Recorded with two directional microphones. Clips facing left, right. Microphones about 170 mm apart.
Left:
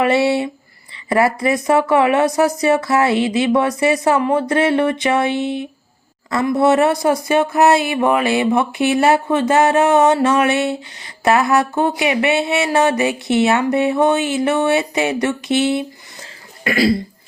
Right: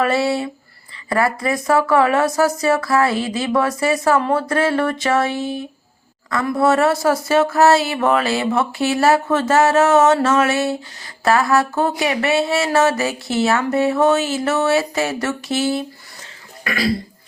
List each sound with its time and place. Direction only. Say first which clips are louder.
0.0 s speech: left 3 dB; 25° left (ahead or behind)
16.6 s speech: left 5 dB; 30° left (ahead or behind)